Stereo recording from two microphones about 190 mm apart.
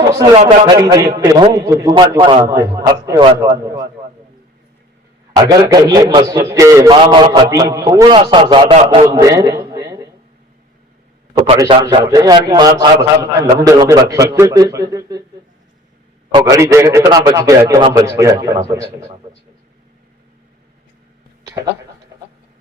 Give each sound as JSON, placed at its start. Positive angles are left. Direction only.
{"t": 0.0, "sound": "a sound", "side_deg": -20}
{"t": 0.3, "sound": "a man's voice", "side_deg": -20}
{"t": 5.6, "sound": "a man's voice", "side_deg": -20}
{"t": 9.6, "sound": "a sound", "side_deg": -20}
{"t": 11.3, "sound": "a man's voice", "side_deg": -20}
{"t": 16.3, "sound": "a man's voice", "side_deg": -15}